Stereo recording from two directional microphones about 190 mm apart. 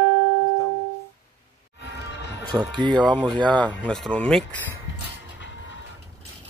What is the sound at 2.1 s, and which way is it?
Music, 70° left (ahead or behind).